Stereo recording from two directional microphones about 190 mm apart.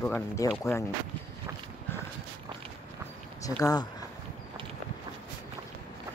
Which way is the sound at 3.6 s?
20° left (ahead or behind).